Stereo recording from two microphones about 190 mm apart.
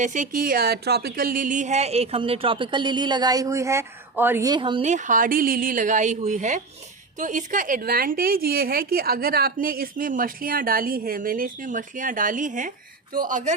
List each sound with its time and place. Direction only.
0.0 s speech: 40° right (ahead or behind); by 4.8 s 25° right (ahead or behind)
4.8 s a woman's voice: 40° right (ahead or behind)